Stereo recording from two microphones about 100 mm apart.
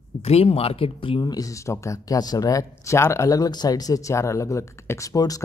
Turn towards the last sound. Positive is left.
turn(degrees=35)  # may be behind; listen again after turning